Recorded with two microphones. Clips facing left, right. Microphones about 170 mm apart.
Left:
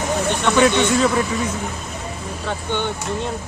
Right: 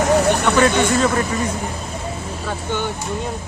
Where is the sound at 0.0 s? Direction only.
75° right (ahead or behind).